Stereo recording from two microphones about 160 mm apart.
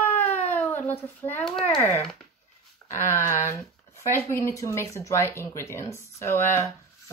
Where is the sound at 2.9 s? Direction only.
15° left (ahead or behind).